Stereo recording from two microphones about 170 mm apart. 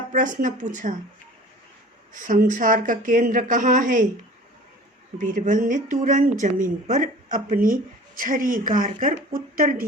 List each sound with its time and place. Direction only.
0.1 s speech: 50° right (ahead or behind)
2.1 s speech: 50° right (ahead or behind)
5.1 s speech: 50° right (ahead or behind)